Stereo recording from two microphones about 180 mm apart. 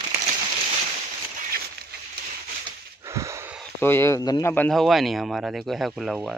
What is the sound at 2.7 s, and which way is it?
Wheeze, 15° right (ahead or behind).